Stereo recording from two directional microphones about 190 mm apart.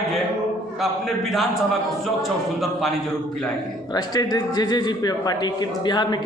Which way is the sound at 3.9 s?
20° left (ahead or behind).